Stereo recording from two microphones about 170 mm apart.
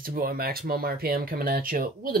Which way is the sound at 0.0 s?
60° right (ahead or behind).